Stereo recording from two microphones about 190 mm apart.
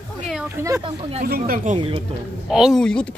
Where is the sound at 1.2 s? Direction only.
50° right (ahead or behind).